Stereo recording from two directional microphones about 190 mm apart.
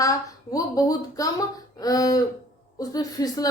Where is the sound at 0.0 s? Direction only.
20° left (ahead or behind).